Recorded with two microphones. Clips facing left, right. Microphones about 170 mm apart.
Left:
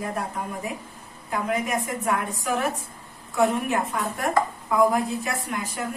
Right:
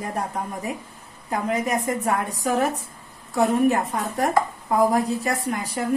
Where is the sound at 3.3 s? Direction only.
40° right (ahead or behind).